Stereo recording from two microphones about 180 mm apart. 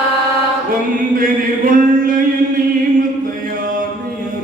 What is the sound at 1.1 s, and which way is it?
Chant, 50° right (ahead or behind).